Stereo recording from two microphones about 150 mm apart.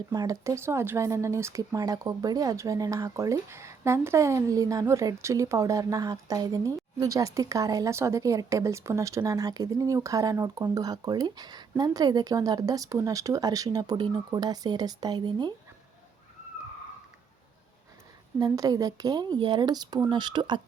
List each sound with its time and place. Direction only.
0.1 s speech: 25° right (ahead or behind)
18.3 s speech: 25° right (ahead or behind)